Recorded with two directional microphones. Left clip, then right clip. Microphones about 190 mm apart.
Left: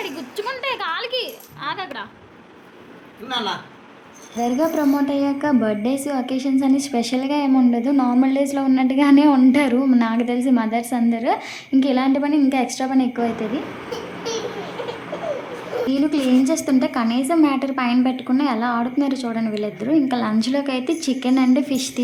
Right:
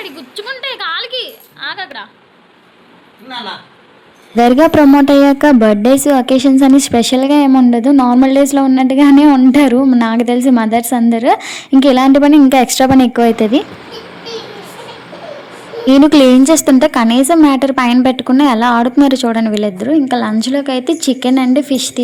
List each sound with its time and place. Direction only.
0.0 s a sound: centre (ahead or behind)
4.4 s a woman's voice: 50° right (ahead or behind)
15.9 s a woman's voice: 50° right (ahead or behind); by 22.0 s 35° right (ahead or behind)